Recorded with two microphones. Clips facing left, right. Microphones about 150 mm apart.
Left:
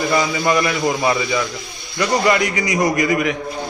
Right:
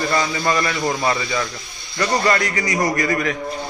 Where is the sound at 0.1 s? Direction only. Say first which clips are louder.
Left 4 dB; 15° left (ahead or behind).